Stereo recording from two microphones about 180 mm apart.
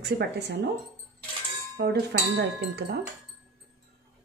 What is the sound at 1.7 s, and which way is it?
A woman's voice, 65° right (ahead or behind).